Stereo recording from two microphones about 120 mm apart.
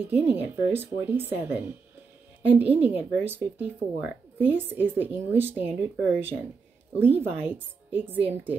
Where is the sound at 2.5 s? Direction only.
55° right (ahead or behind).